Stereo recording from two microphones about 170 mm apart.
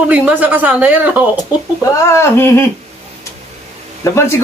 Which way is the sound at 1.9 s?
15° left (ahead or behind).